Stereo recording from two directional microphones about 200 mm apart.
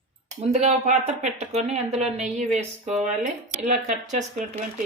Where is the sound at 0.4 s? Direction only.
35° right (ahead or behind).